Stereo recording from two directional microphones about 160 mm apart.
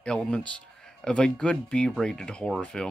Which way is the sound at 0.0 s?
5° left (ahead or behind).